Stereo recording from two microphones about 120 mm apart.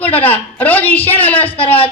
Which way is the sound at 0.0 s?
15° left (ahead or behind).